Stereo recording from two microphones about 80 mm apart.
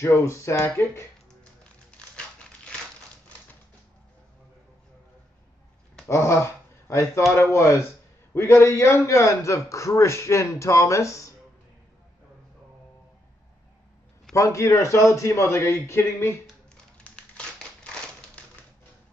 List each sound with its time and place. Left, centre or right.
0.0 s a man's voice: left
1.4 s music: centre
6.0 s a man's voice: left
14.3 s a man's voice: left
17.0 s a sound: centre